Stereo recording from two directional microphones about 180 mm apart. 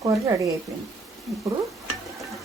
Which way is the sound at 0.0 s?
20° right (ahead or behind).